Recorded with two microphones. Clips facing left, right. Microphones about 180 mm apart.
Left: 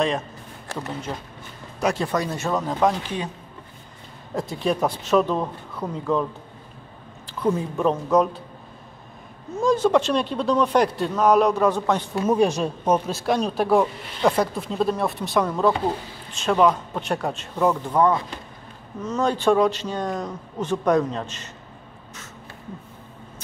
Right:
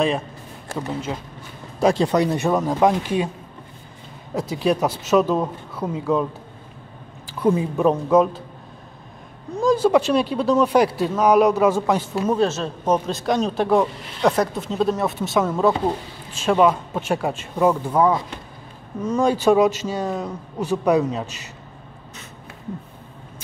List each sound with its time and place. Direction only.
1.8 s speech: 30° right (ahead or behind)
2.1 s speech: 15° right (ahead or behind)
4.3 s speech: 5° right (ahead or behind)
7.2 s speech: 10° right (ahead or behind)
9.6 s speech: 5° right (ahead or behind)
12.3 s speech: 15° left (ahead or behind); by 21.3 s 10° right (ahead or behind)